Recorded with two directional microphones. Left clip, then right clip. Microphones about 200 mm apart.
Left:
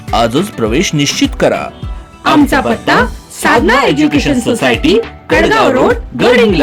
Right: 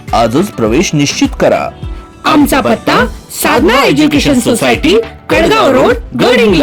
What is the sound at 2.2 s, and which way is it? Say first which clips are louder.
Speech: right 1 dB; 20° right (ahead or behind).